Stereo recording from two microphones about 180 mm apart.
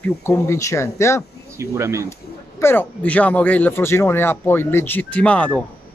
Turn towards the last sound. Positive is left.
turn(degrees=5)  # may be behind; listen again after turning